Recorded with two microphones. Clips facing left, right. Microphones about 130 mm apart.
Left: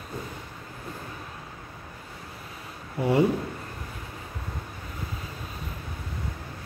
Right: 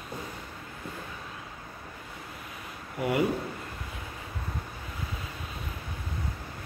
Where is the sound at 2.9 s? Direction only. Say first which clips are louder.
Left 5 dB; 30° left (ahead or behind).